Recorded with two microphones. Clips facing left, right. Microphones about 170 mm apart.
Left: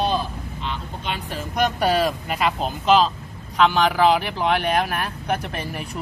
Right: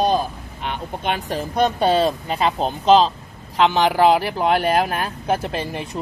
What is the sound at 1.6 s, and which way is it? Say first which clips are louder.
Speech: right 3 dB; 25° right (ahead or behind).